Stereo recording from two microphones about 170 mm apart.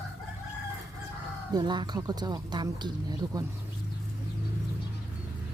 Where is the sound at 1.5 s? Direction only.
25° right (ahead or behind).